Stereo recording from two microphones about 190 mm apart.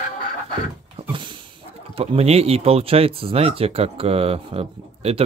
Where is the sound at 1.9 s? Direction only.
30° right (ahead or behind).